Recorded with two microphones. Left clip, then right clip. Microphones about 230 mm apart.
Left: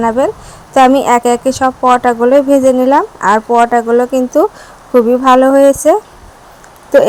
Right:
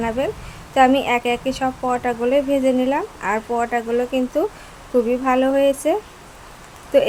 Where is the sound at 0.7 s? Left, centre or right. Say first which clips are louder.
Left 8 dB; left.